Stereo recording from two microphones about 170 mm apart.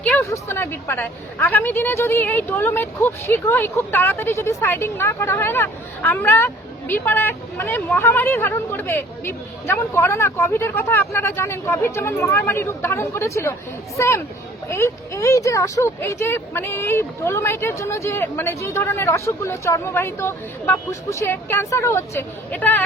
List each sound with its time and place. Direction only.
0.0 s a woman's voice: 10° left (ahead or behind)